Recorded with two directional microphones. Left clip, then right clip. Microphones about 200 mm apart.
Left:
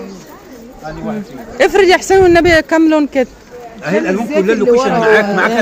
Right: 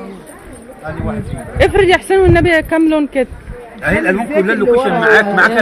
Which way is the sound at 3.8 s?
20° right (ahead or behind).